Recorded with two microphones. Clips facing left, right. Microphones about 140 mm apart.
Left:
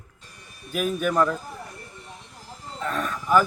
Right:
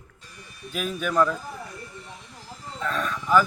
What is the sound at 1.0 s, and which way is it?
Speech, 15° left (ahead or behind).